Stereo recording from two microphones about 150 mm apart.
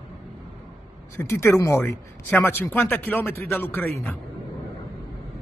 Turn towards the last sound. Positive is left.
turn(degrees=15)  # may be behind; listen again after turning